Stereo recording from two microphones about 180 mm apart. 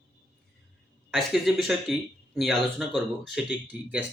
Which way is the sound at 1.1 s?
Centre (ahead or behind).